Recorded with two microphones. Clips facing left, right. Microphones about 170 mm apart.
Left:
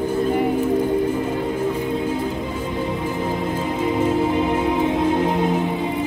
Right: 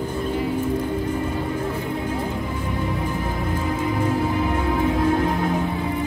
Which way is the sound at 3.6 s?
20° left (ahead or behind).